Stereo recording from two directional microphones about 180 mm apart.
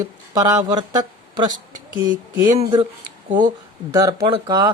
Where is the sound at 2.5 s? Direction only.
35° right (ahead or behind).